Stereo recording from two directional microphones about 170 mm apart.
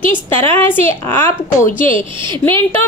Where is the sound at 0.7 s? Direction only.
15° left (ahead or behind).